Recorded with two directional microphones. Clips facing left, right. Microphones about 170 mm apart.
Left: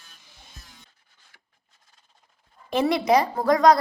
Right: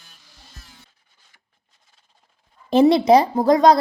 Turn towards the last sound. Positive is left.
turn(degrees=-25)  # may be behind; listen again after turning